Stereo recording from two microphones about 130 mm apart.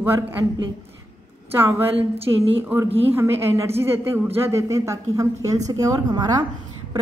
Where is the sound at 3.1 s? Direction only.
20° right (ahead or behind).